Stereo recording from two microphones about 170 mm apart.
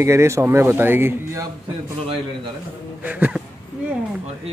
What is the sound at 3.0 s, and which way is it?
Speech, 10° right (ahead or behind).